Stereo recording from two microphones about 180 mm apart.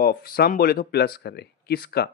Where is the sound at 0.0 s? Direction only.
55° left (ahead or behind).